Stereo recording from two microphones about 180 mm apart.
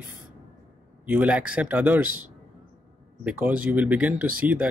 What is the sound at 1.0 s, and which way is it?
Speech, 10° right (ahead or behind).